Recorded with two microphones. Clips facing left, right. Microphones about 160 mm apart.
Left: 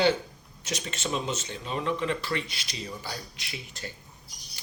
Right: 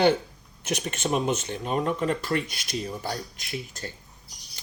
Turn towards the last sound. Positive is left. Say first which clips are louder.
# right 5 dB
turn(degrees=-45)  # may be behind; listen again after turning